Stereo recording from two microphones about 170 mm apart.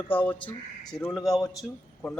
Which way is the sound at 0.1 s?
10° left (ahead or behind).